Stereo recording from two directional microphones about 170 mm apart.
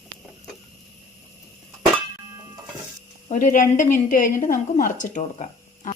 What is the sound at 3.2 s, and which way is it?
A woman's voice, 50° left (ahead or behind).